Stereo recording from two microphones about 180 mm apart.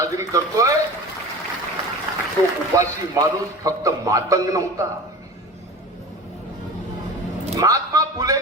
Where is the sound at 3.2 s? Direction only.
20° right (ahead or behind).